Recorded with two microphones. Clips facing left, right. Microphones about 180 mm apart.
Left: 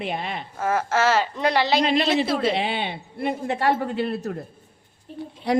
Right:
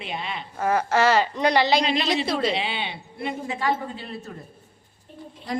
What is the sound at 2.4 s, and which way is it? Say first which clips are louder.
A woman's voice: left 2 dB; 55° left (ahead or behind).